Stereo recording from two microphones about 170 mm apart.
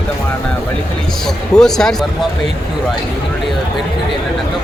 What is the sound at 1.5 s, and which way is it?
Speech, 5° left (ahead or behind).